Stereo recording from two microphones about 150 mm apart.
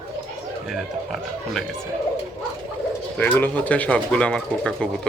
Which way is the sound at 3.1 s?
10° left (ahead or behind).